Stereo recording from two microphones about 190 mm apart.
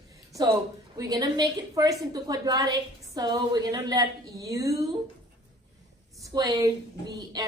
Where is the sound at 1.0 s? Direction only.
20° right (ahead or behind).